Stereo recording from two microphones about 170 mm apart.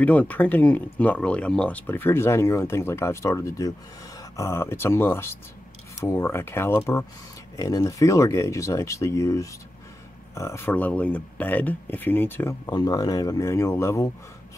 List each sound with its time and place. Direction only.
0.0 s speech: 10° left (ahead or behind)